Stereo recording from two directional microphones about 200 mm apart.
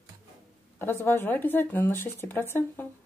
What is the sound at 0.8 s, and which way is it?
Speech, 10° left (ahead or behind).